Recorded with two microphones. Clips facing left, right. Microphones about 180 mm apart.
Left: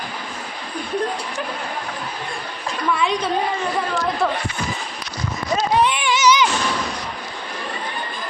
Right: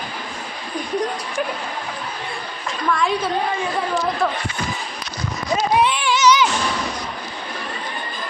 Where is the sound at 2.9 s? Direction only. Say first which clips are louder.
Right 1 dB; 5° left (ahead or behind).